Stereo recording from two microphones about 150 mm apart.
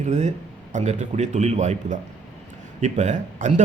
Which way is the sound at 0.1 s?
50° right (ahead or behind).